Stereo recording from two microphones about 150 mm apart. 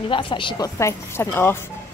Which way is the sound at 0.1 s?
35° left (ahead or behind).